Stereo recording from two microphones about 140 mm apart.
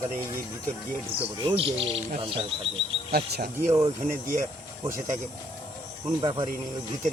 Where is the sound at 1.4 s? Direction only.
40° right (ahead or behind).